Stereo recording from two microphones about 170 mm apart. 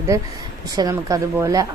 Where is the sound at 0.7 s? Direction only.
20° right (ahead or behind).